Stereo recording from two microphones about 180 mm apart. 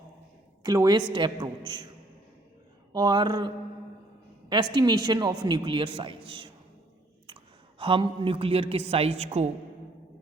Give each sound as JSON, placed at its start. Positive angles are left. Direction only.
{"t": 0.6, "sound": "a woman's voice", "side_deg": -20}
{"t": 2.9, "sound": "a man's voice", "side_deg": -25}
{"t": 4.7, "sound": "a man's voice", "side_deg": -25}
{"t": 7.8, "sound": "a woman's voice", "side_deg": -30}